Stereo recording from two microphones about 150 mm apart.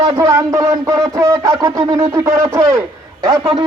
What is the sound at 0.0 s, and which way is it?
Speech, 20° right (ahead or behind).